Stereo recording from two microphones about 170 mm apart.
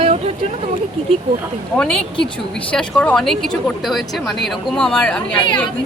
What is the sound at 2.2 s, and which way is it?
A woman's voice, 5° left (ahead or behind).